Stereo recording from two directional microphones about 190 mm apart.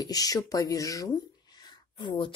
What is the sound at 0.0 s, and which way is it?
Speech, 20° left (ahead or behind).